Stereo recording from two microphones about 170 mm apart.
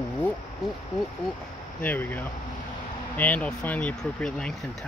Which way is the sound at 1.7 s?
10° left (ahead or behind).